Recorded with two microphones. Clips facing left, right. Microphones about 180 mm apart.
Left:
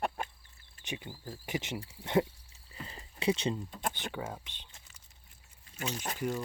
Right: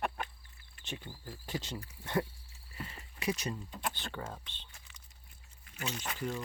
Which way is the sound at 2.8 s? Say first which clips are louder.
Left 5 dB; 35° left (ahead or behind).